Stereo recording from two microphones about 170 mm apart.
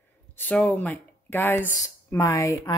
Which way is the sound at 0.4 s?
10° left (ahead or behind).